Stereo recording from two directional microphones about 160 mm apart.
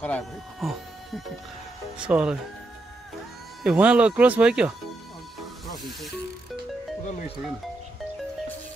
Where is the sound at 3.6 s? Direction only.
5° right (ahead or behind).